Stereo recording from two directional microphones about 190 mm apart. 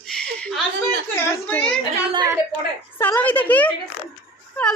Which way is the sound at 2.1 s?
20° right (ahead or behind).